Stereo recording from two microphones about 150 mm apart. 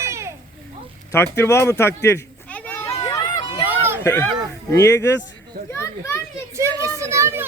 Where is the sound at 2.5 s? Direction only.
10° left (ahead or behind).